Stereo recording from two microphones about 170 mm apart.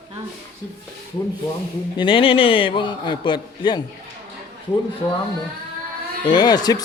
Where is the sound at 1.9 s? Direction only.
30° left (ahead or behind).